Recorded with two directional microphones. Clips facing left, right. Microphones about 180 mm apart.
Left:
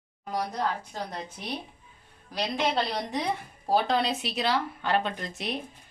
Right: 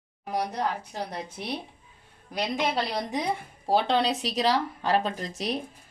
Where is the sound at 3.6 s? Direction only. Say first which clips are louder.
Right 1 dB; 25° right (ahead or behind).